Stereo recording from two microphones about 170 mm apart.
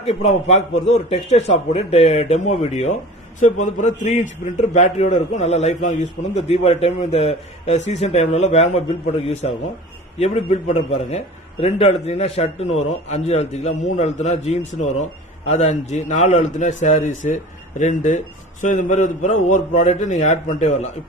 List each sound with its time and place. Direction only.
0.0 s a man's voice: 35° left (ahead or behind)